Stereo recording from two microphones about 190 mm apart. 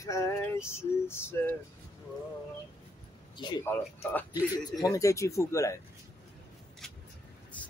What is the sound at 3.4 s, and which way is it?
Speech, 25° left (ahead or behind).